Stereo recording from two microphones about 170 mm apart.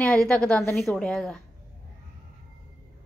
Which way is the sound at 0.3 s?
5° left (ahead or behind).